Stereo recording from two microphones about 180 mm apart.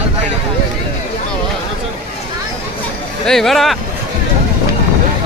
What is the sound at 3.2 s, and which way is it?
Speech, centre (ahead or behind).